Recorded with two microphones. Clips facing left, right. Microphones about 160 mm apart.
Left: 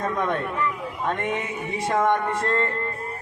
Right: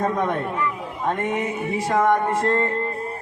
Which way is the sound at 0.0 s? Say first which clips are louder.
Right 3 dB; 25° right (ahead or behind).